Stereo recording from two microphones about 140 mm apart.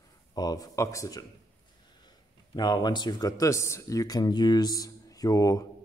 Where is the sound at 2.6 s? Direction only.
30° left (ahead or behind).